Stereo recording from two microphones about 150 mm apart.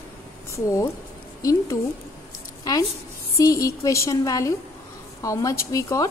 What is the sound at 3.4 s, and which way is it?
Speech, 20° left (ahead or behind).